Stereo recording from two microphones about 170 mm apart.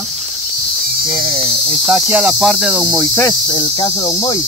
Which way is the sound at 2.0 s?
5° right (ahead or behind).